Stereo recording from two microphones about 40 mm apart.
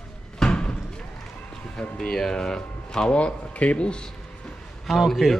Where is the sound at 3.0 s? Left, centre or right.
Left.